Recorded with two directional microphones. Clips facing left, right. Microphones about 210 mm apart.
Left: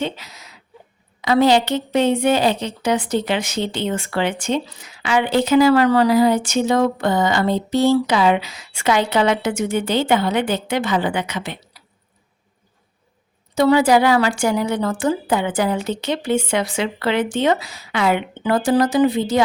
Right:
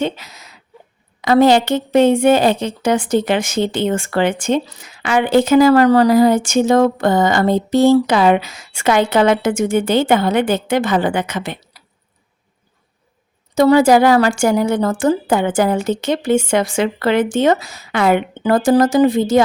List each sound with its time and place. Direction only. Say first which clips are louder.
0.0 s a woman's voice: right 4 dB; 50° right (ahead or behind)
13.6 s a woman's voice: right 4 dB; 45° right (ahead or behind)